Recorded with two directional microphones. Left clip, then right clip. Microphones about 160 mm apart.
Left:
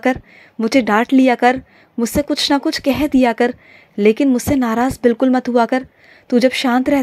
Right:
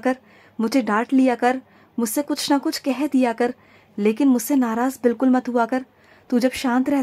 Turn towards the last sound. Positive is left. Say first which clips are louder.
# left 6 dB
turn(degrees=20)  # may be behind; listen again after turning